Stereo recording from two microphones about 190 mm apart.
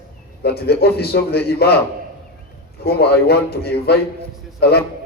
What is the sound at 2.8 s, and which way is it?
A man's voice, 55° left (ahead or behind).